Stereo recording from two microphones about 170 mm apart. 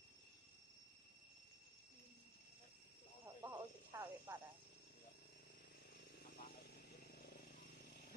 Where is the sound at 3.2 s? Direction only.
20° right (ahead or behind).